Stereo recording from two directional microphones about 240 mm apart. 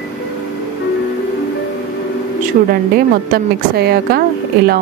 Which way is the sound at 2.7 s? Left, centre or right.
Right.